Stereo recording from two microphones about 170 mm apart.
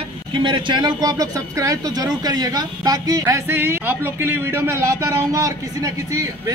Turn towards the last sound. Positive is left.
turn(degrees=-20)  # may be behind; listen again after turning